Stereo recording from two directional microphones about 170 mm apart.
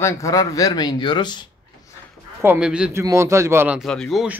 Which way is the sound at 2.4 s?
10° right (ahead or behind).